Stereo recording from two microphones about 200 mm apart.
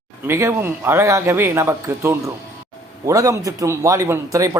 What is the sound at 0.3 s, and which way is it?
Speech, 15° right (ahead or behind).